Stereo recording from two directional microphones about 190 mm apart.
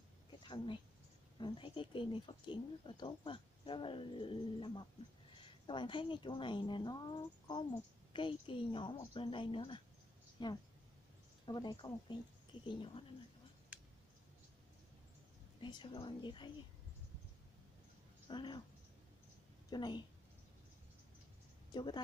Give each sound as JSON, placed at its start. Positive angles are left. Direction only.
{"t": 0.4, "sound": "speech", "side_deg": 25}
{"t": 15.6, "sound": "speech", "side_deg": 25}
{"t": 18.3, "sound": "speech", "side_deg": 25}
{"t": 19.7, "sound": "speech", "side_deg": 20}
{"t": 21.7, "sound": "speech", "side_deg": 25}